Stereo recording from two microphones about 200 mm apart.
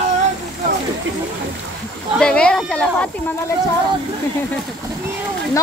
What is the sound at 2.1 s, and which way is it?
Speech, 5° left (ahead or behind).